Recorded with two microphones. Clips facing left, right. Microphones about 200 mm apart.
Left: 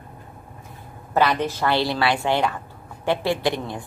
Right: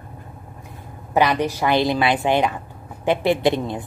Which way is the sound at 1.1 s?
15° right (ahead or behind).